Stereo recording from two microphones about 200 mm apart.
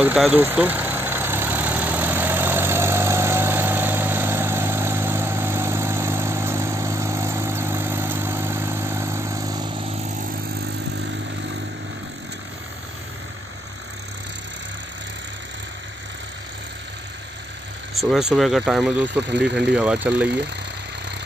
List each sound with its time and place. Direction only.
0.0 s vehicle: 5° right (ahead or behind)
17.9 s speech: centre (ahead or behind)
19.2 s speech: 60° right (ahead or behind)
19.7 s speech: 5° right (ahead or behind)